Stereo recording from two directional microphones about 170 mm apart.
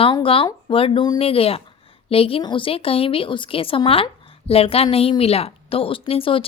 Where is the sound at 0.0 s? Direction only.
30° left (ahead or behind).